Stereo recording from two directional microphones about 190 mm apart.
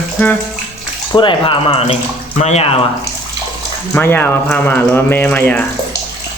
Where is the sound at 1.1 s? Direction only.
25° left (ahead or behind).